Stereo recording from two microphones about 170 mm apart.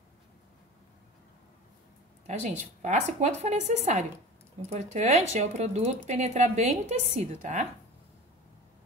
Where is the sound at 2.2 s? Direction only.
40° right (ahead or behind).